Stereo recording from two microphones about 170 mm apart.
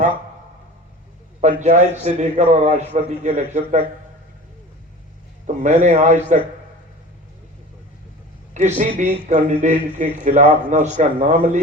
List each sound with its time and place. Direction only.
1.4 s a man's voice: 40° right (ahead or behind)
5.6 s a man's voice: 45° right (ahead or behind)
8.5 s a man's voice: 45° right (ahead or behind)